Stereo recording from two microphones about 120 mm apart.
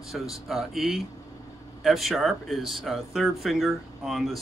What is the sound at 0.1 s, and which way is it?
Speech, centre (ahead or behind).